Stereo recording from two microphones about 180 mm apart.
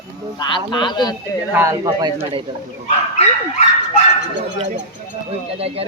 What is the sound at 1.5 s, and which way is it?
Speech, 20° right (ahead or behind).